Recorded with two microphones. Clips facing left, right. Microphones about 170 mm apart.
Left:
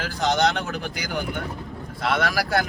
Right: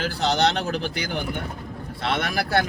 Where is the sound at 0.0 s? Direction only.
30° right (ahead or behind).